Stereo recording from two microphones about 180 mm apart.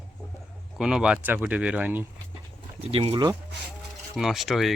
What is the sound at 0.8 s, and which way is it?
Speech, 5° right (ahead or behind).